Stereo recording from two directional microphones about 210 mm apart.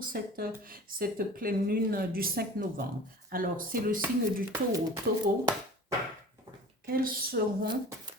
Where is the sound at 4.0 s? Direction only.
15° right (ahead or behind).